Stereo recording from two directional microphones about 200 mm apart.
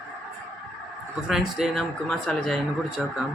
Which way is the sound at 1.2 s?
Centre (ahead or behind).